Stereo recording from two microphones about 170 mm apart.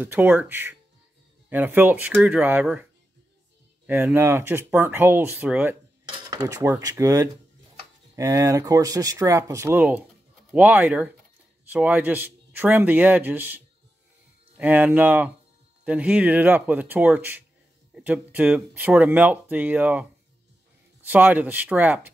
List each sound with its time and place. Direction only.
0.0 s speech: 10° right (ahead or behind)
6.0 s cutlery: 20° right (ahead or behind)
8.2 s speech: 20° right (ahead or behind)
14.6 s speech: 10° right (ahead or behind)